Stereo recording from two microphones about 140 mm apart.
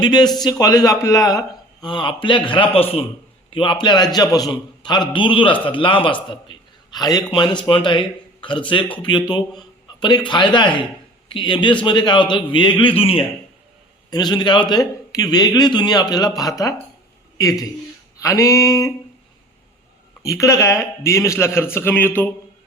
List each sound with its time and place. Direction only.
0.0 s a man's voice: 30° left (ahead or behind)
14.1 s a man's voice: 30° left (ahead or behind)
18.2 s a man's voice: 20° left (ahead or behind)
20.2 s a man's voice: 20° left (ahead or behind)